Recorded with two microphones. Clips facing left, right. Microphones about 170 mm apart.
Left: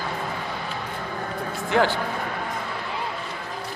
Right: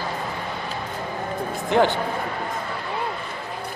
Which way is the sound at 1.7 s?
20° right (ahead or behind).